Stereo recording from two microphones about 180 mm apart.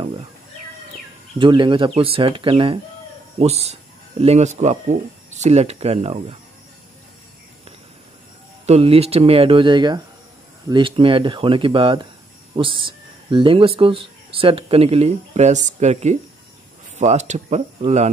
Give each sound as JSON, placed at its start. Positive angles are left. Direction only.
{"t": 1.4, "sound": "speech", "side_deg": -25}
{"t": 8.6, "sound": "speech", "side_deg": -35}